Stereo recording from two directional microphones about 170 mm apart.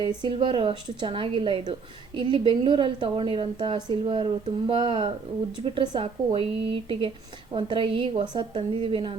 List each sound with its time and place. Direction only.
0.0 s a woman's voice: 30° right (ahead or behind)